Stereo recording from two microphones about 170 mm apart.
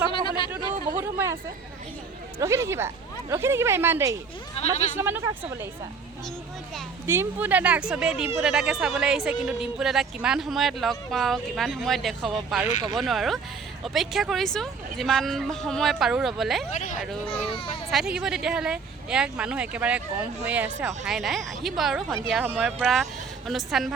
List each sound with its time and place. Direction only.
0.1 s a sound: 30° left (ahead or behind)
0.9 s a sound: 15° right (ahead or behind)
2.4 s speech: 15° right (ahead or behind)
4.6 s speech: 40° left (ahead or behind)
4.9 s speech: 15° right (ahead or behind)
7.1 s speech: 10° right (ahead or behind)
16.7 s speech: 50° left (ahead or behind)
17.2 s speech: 35° left (ahead or behind)
17.9 s speech: 5° right (ahead or behind)